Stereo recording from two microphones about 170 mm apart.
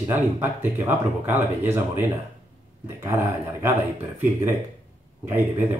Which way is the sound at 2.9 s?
15° right (ahead or behind).